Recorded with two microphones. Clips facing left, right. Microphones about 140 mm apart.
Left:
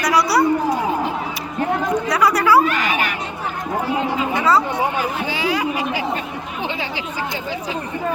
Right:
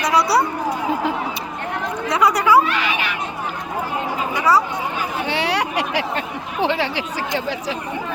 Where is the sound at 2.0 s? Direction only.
20° right (ahead or behind).